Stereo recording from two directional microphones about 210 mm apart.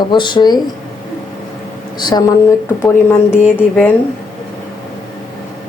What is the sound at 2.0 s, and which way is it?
Speech, 20° left (ahead or behind).